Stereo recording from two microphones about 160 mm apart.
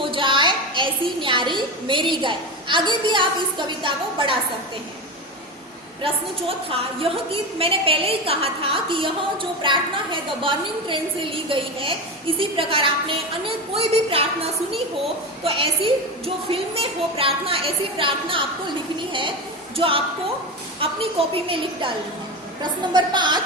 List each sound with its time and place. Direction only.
0.1 s a woman's voice: 30° right (ahead or behind)
6.7 s a woman's voice: 35° right (ahead or behind)
15.4 s a woman's voice: 35° right (ahead or behind)
19.7 s a woman's voice: 35° right (ahead or behind)